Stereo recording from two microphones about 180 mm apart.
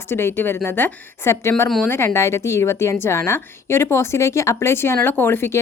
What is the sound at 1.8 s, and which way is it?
A woman's voice, 15° left (ahead or behind).